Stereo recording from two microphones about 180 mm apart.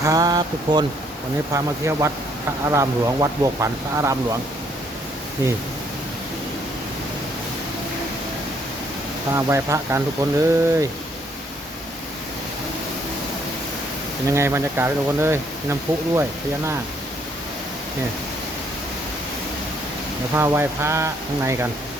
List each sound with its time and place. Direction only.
0.0 s speech: 20° right (ahead or behind)
9.3 s speech: 15° right (ahead or behind)
14.3 s speech: 15° right (ahead or behind)
20.3 s speech: 15° right (ahead or behind)